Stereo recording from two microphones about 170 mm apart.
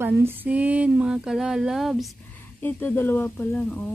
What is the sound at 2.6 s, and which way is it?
Speech, 10° left (ahead or behind).